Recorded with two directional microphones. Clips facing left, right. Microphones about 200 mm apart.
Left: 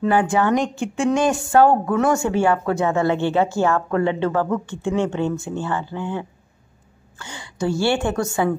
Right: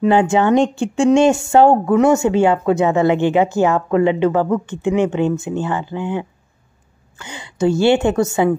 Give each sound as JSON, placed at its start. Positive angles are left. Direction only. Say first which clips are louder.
{"t": 0.0, "sound": "speech", "louder": "right 4 dB", "side_deg": -25}